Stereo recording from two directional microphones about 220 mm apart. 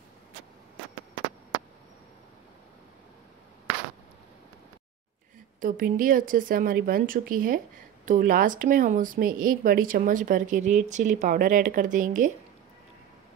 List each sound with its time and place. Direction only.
5.6 s a woman's voice: 40° right (ahead or behind)